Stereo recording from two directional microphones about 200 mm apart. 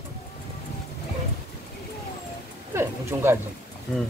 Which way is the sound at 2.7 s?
15° right (ahead or behind).